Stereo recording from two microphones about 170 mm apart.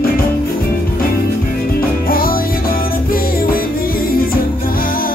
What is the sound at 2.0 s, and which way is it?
Music, 60° left (ahead or behind).